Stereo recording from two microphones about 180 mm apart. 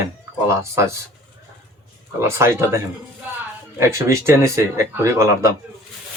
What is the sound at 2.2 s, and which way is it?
Speech, 15° right (ahead or behind).